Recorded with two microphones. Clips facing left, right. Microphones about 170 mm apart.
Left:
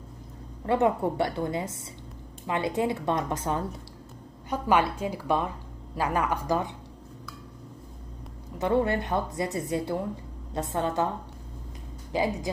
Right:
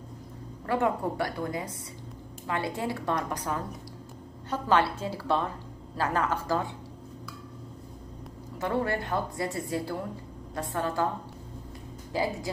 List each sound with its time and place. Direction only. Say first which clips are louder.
0.7 s a woman's voice: left 3 dB; 25° left (ahead or behind)
4.5 s a woman's voice: left 1 dB; 15° left (ahead or behind)
8.5 s a woman's voice: left 4 dB; 20° left (ahead or behind)
12.1 s a woman's voice: left 2 dB; 20° left (ahead or behind)